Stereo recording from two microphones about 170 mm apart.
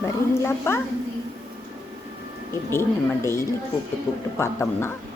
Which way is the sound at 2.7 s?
15° left (ahead or behind).